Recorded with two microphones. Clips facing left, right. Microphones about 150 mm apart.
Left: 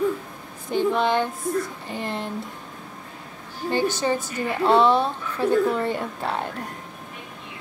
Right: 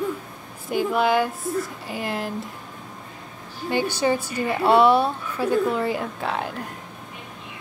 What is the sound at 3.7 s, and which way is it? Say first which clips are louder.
A woman's voice: right 1 dB; 10° right (ahead or behind).